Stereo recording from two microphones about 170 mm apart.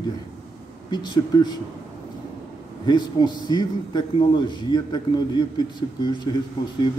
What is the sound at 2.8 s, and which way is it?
A man's voice, 25° left (ahead or behind).